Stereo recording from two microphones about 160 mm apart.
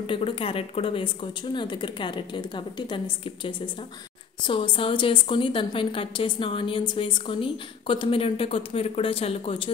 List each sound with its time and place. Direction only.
0.0 s a woman's voice: 35° left (ahead or behind)